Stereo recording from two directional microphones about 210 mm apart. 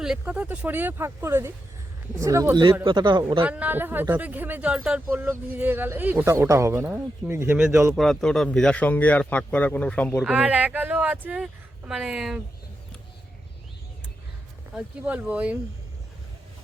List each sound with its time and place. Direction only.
0.0 s a man's voice: 5° right (ahead or behind); by 3.4 s 20° right (ahead or behind)
3.4 s speech: 5° right (ahead or behind)
7.9 s speech: centre (ahead or behind)
10.2 s speech: 5° right (ahead or behind)
14.7 s speech: 5° right (ahead or behind)